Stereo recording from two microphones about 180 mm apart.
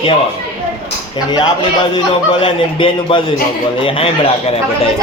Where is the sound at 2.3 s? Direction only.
30° left (ahead or behind).